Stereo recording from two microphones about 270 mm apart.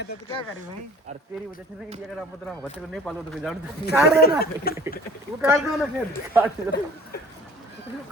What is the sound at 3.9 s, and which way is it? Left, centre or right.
Speech, left.